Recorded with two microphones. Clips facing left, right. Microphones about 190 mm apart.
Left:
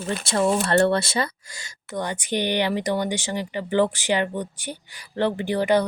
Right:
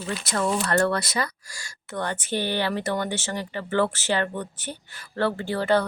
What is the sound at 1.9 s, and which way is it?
Speech, 15° left (ahead or behind).